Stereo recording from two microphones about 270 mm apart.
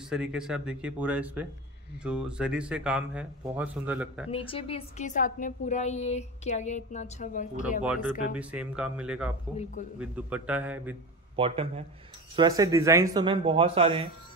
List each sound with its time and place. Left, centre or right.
0.1 s speech: centre
4.3 s a woman's voice: centre
7.8 s speech: centre
11.3 s a man's voice: right